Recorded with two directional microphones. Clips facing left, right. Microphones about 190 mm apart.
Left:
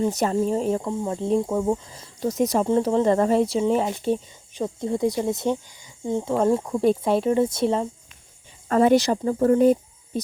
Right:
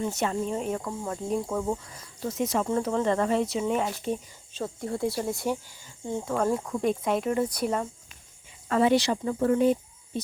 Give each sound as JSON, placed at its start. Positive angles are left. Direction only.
{"t": 0.0, "sound": "speech", "side_deg": 40}
{"t": 2.2, "sound": "speech", "side_deg": 40}
{"t": 4.5, "sound": "speech", "side_deg": 20}
{"t": 8.7, "sound": "speech", "side_deg": 45}